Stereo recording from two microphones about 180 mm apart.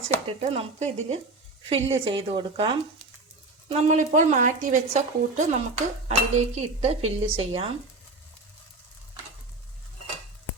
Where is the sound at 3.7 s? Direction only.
40° right (ahead or behind).